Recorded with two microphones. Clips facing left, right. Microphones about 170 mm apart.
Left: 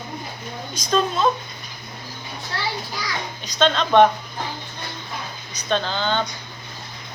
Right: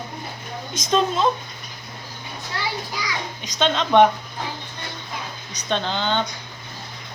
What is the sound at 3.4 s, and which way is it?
Speech, 20° right (ahead or behind).